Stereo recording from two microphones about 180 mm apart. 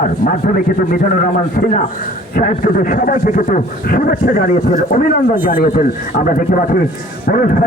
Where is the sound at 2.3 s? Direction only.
50° left (ahead or behind).